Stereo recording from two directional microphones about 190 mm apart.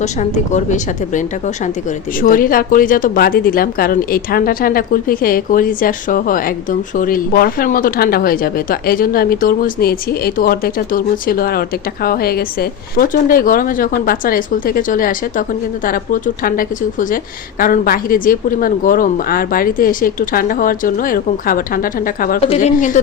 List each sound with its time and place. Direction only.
0.0 s a woman's voice: 40° left (ahead or behind)
2.2 s a woman's voice: 45° left (ahead or behind)